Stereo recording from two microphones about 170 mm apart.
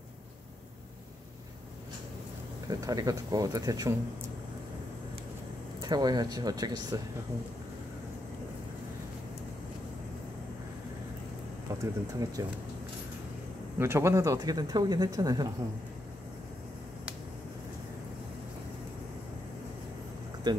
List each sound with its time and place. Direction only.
2.7 s speech: 20° right (ahead or behind)
5.8 s speech: 25° right (ahead or behind)
11.8 s speech: 20° right (ahead or behind)
13.7 s speech: 15° right (ahead or behind)
20.5 s speech: 25° right (ahead or behind)